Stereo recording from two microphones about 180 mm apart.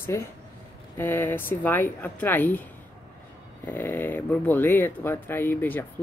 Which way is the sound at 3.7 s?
10° left (ahead or behind).